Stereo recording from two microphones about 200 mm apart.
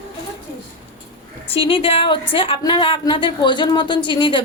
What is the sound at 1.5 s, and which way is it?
A woman's voice, 25° left (ahead or behind).